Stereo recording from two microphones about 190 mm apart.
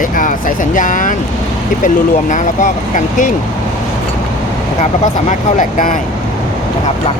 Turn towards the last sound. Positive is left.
turn(degrees=45)  # may be behind; listen again after turning